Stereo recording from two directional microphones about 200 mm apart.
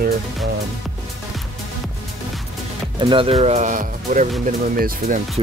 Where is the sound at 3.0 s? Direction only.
25° right (ahead or behind); by 5.2 s 45° right (ahead or behind).